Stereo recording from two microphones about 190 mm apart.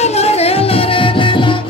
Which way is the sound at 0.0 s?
35° left (ahead or behind).